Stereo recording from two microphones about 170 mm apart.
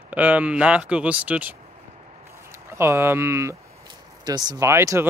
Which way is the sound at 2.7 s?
15° right (ahead or behind).